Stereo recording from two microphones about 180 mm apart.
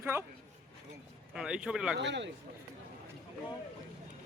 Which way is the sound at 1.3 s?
5° right (ahead or behind).